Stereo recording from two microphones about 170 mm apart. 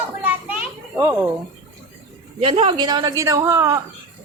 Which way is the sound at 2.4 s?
35° right (ahead or behind).